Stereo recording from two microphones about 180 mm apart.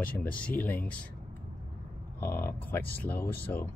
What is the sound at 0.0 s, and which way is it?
Speech, 10° left (ahead or behind).